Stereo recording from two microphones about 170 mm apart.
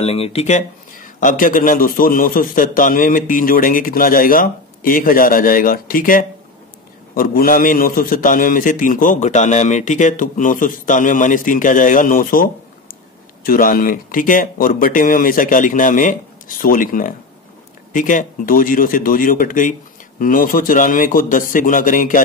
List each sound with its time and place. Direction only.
0.0 s a man's voice: 35° left (ahead or behind); by 12.4 s 55° left (ahead or behind)
13.5 s a man's voice: 55° left (ahead or behind)